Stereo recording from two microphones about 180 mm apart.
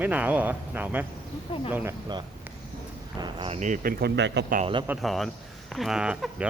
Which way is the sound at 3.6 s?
45° right (ahead or behind).